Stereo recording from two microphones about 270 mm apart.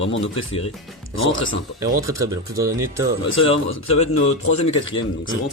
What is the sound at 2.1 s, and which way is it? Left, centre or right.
Speech, centre.